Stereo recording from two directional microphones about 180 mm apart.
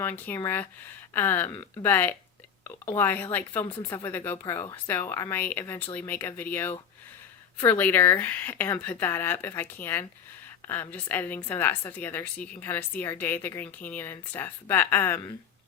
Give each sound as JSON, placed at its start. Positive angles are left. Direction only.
{"t": 0.0, "sound": "a woman's voice", "side_deg": 10}